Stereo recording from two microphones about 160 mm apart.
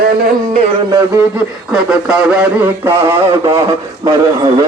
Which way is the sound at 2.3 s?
10° right (ahead or behind).